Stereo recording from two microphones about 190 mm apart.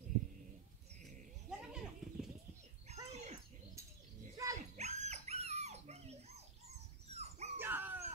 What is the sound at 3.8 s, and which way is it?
Bird, 15° right (ahead or behind).